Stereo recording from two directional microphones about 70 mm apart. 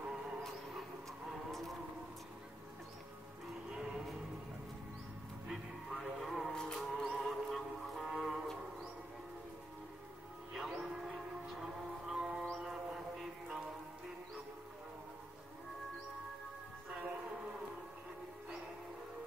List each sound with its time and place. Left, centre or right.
1.5 s a sound: centre
3.7 s music: centre
5.5 s music: centre
10.5 s civil defense siren: centre
12.5 s music: centre
16.9 s music: centre